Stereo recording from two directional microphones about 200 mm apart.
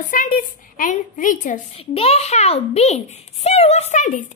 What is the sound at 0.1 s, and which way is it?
A woman's voice, 45° left (ahead or behind).